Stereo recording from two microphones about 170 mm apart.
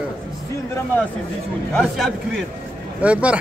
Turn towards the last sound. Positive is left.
turn(degrees=-5)  # may be behind; listen again after turning